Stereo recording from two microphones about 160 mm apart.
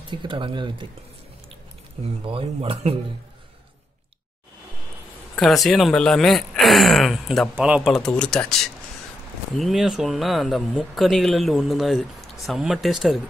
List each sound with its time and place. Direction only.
0.1 s speech: 30° right (ahead or behind)
2.2 s speech: 35° right (ahead or behind)
5.3 s speech: centre (ahead or behind)
9.6 s speech: centre (ahead or behind)